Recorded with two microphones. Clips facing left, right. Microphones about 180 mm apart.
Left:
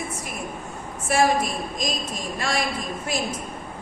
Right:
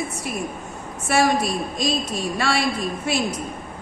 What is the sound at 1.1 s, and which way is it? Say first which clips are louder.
A woman's voice: right 1 dB; 80° right.